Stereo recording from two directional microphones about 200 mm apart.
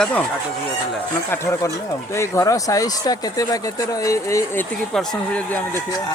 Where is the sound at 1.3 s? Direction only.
15° left (ahead or behind).